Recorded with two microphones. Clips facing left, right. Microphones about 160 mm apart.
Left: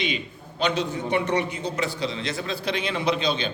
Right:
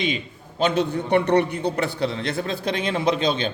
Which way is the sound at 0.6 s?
55° right (ahead or behind).